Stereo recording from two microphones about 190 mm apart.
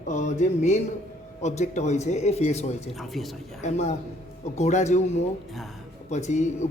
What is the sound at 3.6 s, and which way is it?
Speech, 35° left (ahead or behind).